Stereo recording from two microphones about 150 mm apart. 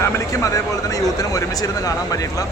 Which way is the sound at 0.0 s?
20° left (ahead or behind).